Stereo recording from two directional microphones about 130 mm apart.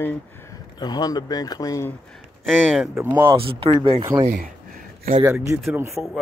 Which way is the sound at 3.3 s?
45° right (ahead or behind).